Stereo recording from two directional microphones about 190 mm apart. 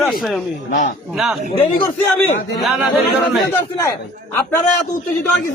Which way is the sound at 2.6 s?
Centre (ahead or behind).